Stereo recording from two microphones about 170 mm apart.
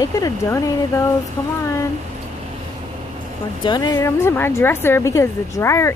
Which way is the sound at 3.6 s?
25° left (ahead or behind).